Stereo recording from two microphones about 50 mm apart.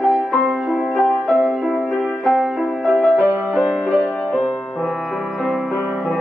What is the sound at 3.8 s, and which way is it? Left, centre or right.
Music, centre.